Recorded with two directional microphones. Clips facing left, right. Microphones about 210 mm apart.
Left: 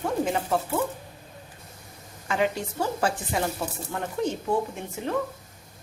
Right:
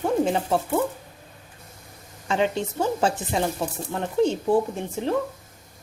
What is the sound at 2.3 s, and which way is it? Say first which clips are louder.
Speech: right 2 dB; 25° right (ahead or behind).